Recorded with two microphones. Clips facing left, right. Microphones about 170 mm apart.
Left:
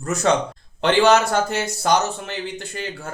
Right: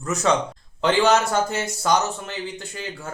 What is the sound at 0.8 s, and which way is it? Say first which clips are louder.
A man's voice: left 3 dB; 65° left (ahead or behind).